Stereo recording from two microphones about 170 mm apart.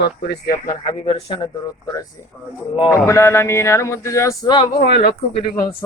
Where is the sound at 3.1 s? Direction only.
15° left (ahead or behind).